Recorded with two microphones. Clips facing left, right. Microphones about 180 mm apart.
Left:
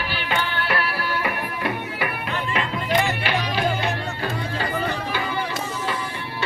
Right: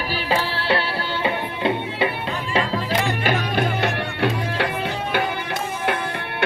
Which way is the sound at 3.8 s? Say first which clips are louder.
Right 4 dB; 75° right (ahead or behind).